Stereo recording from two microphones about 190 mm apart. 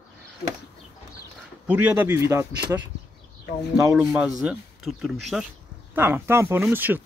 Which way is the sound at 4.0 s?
5° right (ahead or behind).